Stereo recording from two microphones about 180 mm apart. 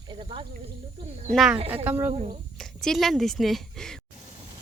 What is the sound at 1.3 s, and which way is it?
Speech, centre (ahead or behind).